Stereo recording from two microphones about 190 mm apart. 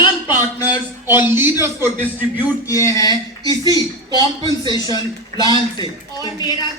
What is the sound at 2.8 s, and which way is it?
A man's voice, 20° left (ahead or behind).